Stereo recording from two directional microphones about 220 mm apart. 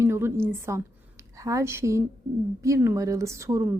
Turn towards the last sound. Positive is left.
turn(degrees=-15)  # may be behind; listen again after turning